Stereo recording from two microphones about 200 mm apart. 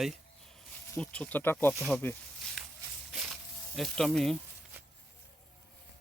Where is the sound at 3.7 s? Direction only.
Centre (ahead or behind).